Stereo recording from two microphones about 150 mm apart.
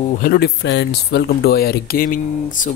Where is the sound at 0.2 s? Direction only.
90° left.